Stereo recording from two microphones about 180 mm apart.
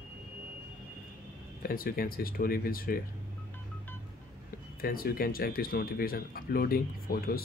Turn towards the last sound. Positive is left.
turn(degrees=55)  # may be behind; listen again after turning